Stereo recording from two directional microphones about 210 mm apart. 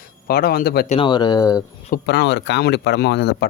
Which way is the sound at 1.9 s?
55° left (ahead or behind).